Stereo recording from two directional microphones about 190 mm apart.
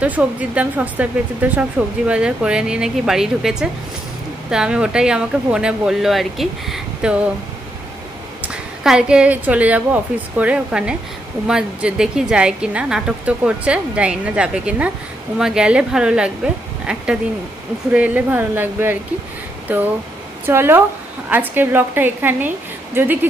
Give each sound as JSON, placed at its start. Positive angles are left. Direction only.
{"t": 0.0, "sound": "speech", "side_deg": -5}
{"t": 8.4, "sound": "a woman's voice", "side_deg": -5}